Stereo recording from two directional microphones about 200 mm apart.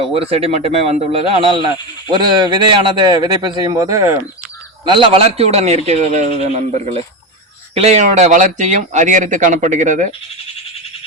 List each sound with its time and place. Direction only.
0.0 s speech: 30° right (ahead or behind)